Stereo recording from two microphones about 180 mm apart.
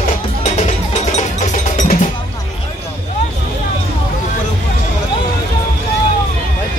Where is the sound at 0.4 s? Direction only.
35° left (ahead or behind).